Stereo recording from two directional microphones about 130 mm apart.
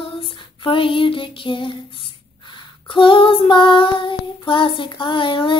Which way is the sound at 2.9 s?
40° left (ahead or behind).